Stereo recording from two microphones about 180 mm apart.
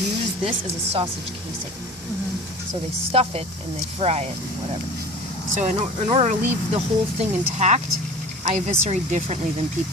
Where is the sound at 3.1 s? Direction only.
35° right (ahead or behind).